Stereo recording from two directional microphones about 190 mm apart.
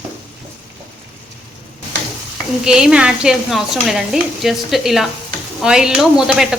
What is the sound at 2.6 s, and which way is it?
A woman's voice, 5° right (ahead or behind).